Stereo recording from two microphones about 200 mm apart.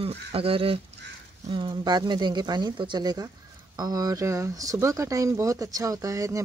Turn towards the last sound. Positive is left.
turn(degrees=-15)  # may be behind; listen again after turning